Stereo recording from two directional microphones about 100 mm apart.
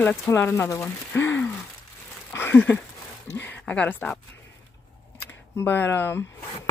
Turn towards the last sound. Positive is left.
turn(degrees=20)  # may be behind; listen again after turning